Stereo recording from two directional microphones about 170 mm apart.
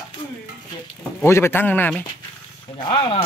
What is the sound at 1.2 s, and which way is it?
Speech, 15° left (ahead or behind).